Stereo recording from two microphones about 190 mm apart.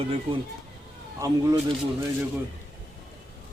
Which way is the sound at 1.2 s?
20° right (ahead or behind).